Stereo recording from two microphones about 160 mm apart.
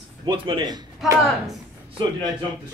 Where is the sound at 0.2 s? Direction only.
25° right (ahead or behind).